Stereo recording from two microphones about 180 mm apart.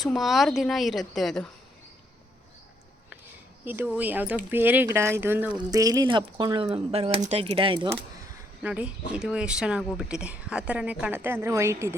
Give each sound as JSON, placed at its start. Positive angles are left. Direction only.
{"t": 0.0, "sound": "a woman's voice", "side_deg": 0}
{"t": 3.6, "sound": "speech", "side_deg": -10}
{"t": 8.6, "sound": "speech", "side_deg": -5}